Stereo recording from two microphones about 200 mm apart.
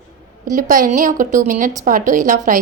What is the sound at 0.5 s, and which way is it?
A woman's voice, 40° right (ahead or behind).